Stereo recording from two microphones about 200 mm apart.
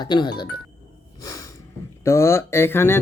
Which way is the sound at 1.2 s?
20° left (ahead or behind).